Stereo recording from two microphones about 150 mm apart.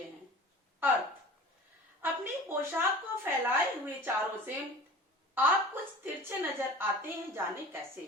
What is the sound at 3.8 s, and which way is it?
A woman's voice, 10° right (ahead or behind).